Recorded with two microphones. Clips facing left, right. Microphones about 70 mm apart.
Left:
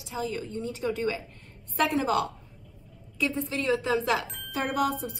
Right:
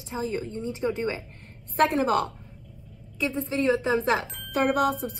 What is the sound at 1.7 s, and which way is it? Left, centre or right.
Speech, right.